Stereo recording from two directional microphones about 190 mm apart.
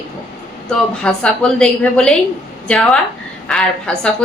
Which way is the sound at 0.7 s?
5° left (ahead or behind).